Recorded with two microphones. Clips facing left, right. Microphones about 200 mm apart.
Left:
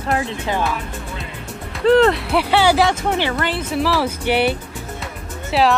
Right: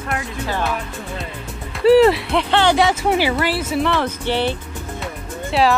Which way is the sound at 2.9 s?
10° right (ahead or behind).